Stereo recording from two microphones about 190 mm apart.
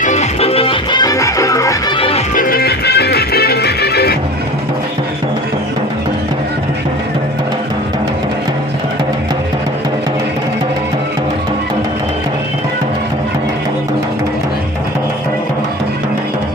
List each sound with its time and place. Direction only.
0.0 s music: 40° left (ahead or behind); by 1.7 s 15° left (ahead or behind)
2.0 s music: 30° left (ahead or behind)
2.3 s music: 50° left (ahead or behind)